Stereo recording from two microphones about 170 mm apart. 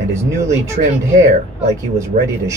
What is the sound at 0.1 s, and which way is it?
Speech, 15° right (ahead or behind).